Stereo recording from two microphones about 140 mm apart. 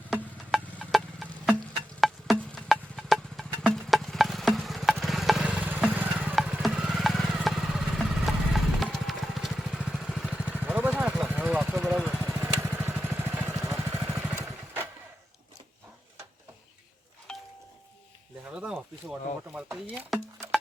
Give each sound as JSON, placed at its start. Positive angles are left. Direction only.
{"t": 0.8, "sound": "a sound", "side_deg": 0}
{"t": 2.0, "sound": "wood block", "side_deg": 0}
{"t": 8.5, "sound": "vehicle", "side_deg": 0}
{"t": 12.2, "sound": "vehicle", "side_deg": -15}
{"t": 13.7, "sound": "vehicle", "side_deg": -20}
{"t": 17.3, "sound": "doorbell", "side_deg": 5}
{"t": 18.4, "sound": "a sound", "side_deg": -10}